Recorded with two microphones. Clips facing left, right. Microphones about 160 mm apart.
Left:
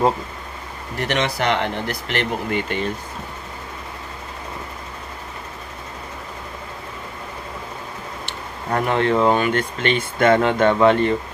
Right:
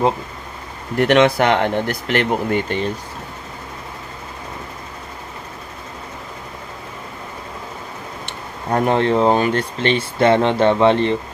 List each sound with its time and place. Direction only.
0.9 s speech: 55° right (ahead or behind); by 2.9 s 40° right (ahead or behind)
8.7 s speech: 35° right (ahead or behind)